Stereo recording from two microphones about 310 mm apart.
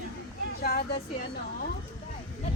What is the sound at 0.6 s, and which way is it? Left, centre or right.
Speech, left.